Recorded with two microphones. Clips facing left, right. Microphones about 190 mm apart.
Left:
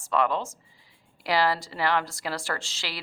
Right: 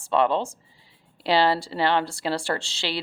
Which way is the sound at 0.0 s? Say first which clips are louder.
Right 4 dB; 30° right (ahead or behind).